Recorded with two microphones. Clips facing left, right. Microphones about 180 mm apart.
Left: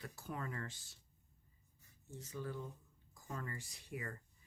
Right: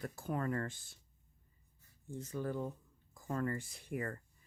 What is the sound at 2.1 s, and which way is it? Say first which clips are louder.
Speech: right 6 dB; 50° right (ahead or behind).